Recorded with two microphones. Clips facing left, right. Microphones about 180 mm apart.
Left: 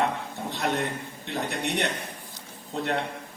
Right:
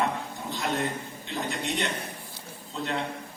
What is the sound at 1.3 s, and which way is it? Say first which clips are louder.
A man's voice: left 2 dB; 60° left (ahead or behind).